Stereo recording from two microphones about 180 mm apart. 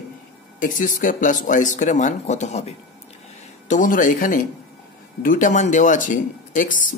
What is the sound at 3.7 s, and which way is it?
Speech, 45° left (ahead or behind).